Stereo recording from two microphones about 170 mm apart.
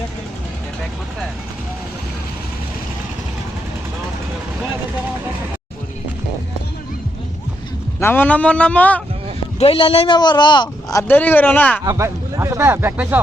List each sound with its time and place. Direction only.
7.9 s a man's voice: 15° left (ahead or behind)
9.6 s speech: 35° left (ahead or behind)
11.1 s a man's voice: 10° left (ahead or behind)
11.9 s speech: 15° right (ahead or behind)